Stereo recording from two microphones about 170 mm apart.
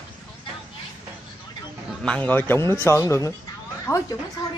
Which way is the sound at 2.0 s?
5° left (ahead or behind).